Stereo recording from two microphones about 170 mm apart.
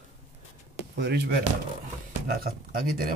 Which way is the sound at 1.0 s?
80° right.